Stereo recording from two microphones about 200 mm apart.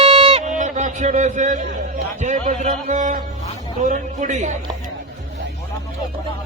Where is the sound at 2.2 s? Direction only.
40° right (ahead or behind).